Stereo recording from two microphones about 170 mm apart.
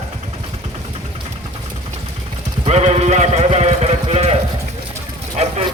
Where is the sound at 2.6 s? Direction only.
40° right (ahead or behind).